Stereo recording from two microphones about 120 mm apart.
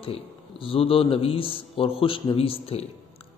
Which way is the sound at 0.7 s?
50° left (ahead or behind).